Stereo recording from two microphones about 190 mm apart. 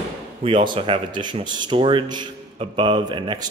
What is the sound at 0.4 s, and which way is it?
Speech, 25° right (ahead or behind).